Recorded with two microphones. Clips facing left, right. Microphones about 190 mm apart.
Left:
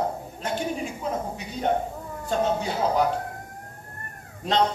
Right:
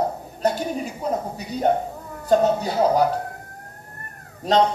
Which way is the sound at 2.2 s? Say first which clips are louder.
Right 6 dB; 40° right (ahead or behind).